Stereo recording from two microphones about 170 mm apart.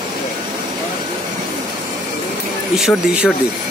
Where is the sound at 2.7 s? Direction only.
Centre (ahead or behind).